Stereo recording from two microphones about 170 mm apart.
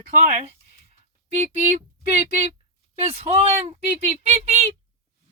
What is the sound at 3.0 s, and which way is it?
Speech, 35° right (ahead or behind).